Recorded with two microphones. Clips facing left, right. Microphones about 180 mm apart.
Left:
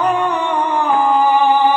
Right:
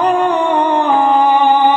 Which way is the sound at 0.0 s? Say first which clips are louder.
Right 4 dB; 35° right (ahead or behind).